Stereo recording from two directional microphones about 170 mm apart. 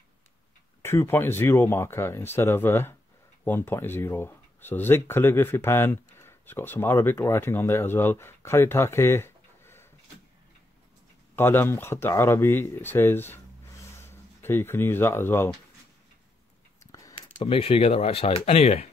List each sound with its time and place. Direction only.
0.8 s speech: 15° left (ahead or behind)
11.3 s speech: 15° left (ahead or behind)
16.8 s a sound: 20° left (ahead or behind)
17.4 s speech: 35° left (ahead or behind)